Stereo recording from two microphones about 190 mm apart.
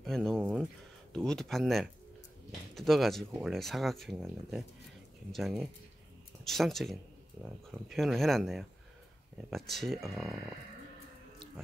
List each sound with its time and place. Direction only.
0.0 s speech: 5° left (ahead or behind)
0.4 s a sound: 5° right (ahead or behind)
1.1 s speech: 5° left (ahead or behind)